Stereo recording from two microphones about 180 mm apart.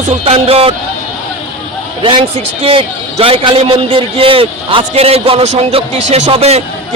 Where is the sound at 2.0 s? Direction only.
25° right (ahead or behind).